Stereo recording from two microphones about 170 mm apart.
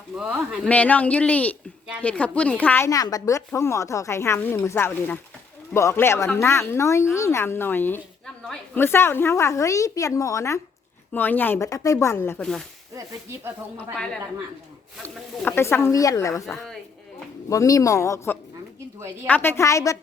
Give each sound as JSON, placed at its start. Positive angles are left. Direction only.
{"t": 0.2, "sound": "a woman's voice", "side_deg": 0}
{"t": 15.4, "sound": "a woman's voice", "side_deg": 15}
{"t": 18.9, "sound": "a woman's voice", "side_deg": -15}
{"t": 19.3, "sound": "a woman's voice", "side_deg": 15}